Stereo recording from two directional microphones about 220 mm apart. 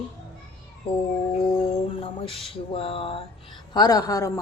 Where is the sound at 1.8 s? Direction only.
25° left (ahead or behind).